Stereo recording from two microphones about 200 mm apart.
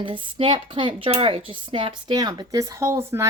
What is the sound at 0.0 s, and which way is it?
A woman's voice, 25° right (ahead or behind).